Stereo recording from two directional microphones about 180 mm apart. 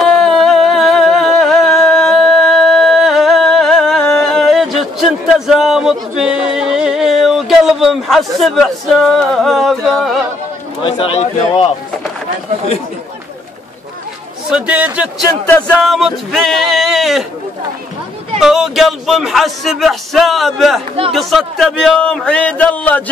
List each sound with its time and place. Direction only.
0.0 s music: centre (ahead or behind)
10.8 s a man's voice: 30° left (ahead or behind)
14.5 s a man's voice: 10° right (ahead or behind)
15.2 s speech: 10° left (ahead or behind)
18.4 s speech: centre (ahead or behind)